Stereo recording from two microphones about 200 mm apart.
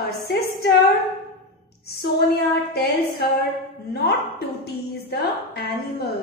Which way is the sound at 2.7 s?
50° left (ahead or behind).